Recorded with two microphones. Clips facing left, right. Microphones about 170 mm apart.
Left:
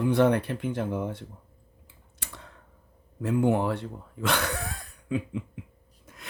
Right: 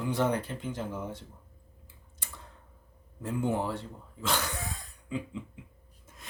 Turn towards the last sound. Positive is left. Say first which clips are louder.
# left 4 dB
turn(degrees=70)  # may be behind; listen again after turning